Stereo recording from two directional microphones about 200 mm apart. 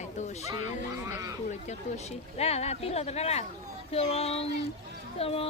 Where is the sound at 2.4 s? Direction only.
30° left (ahead or behind).